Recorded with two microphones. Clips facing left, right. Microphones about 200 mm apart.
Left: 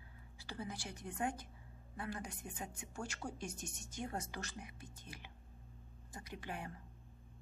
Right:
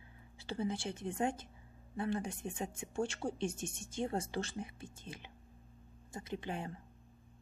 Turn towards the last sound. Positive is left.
turn(degrees=-25)  # may be behind; listen again after turning